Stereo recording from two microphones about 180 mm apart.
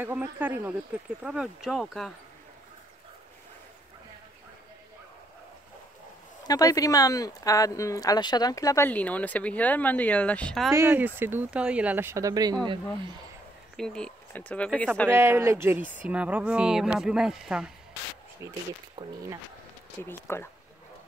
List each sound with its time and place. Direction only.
0.0 s speech: 10° right (ahead or behind)
6.4 s speech: 20° left (ahead or behind); by 10.7 s 5° left (ahead or behind)
10.7 s speech: 15° right (ahead or behind)
13.7 s speech: 5° left (ahead or behind)
15.0 s speech: 15° right (ahead or behind)
18.4 s speech: 15° right (ahead or behind)
19.0 s speech: 25° right (ahead or behind)
20.0 s speech: 15° left (ahead or behind)